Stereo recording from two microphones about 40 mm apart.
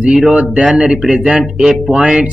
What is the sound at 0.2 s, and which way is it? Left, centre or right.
Speech, right.